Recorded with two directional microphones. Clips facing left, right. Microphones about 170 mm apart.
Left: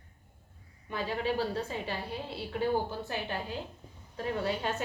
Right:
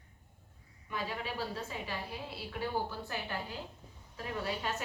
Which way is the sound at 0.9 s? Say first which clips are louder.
Left 7 dB; 30° left (ahead or behind).